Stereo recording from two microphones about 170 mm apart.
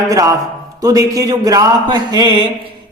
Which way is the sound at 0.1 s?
20° right (ahead or behind).